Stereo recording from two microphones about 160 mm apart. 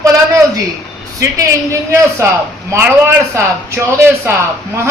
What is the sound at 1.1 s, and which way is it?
A man's voice, 20° right (ahead or behind).